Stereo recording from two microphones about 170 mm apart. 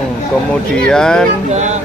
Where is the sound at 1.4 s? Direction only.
45° right (ahead or behind).